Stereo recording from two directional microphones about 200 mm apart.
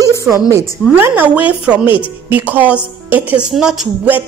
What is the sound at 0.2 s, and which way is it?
A woman's voice, 15° right (ahead or behind).